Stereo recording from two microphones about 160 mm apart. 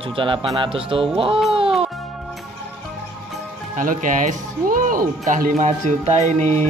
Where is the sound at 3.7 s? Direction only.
55° right (ahead or behind).